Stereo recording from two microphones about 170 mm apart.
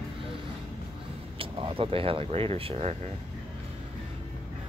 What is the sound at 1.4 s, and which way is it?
Speech, 30° right (ahead or behind).